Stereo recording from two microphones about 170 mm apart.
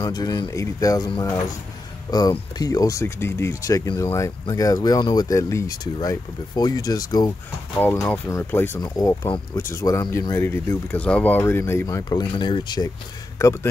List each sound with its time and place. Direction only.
0.0 s speech: 25° left (ahead or behind)
7.8 s a man's voice: 10° left (ahead or behind)